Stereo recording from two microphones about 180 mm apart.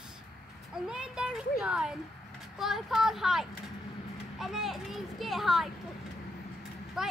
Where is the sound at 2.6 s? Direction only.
Centre (ahead or behind).